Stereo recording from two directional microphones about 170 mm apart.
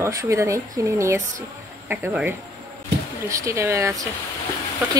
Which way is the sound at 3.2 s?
15° right (ahead or behind).